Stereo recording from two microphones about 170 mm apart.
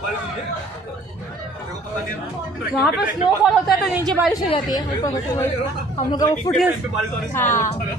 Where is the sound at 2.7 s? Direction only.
5° right (ahead or behind).